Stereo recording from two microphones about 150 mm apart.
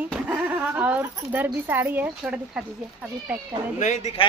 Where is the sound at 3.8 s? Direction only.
55° left (ahead or behind).